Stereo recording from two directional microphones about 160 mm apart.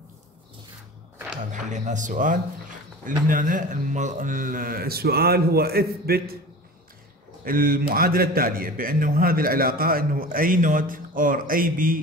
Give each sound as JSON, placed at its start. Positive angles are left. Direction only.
{"t": 1.5, "sound": "a man's voice", "side_deg": -50}
{"t": 7.4, "sound": "a man's voice", "side_deg": -60}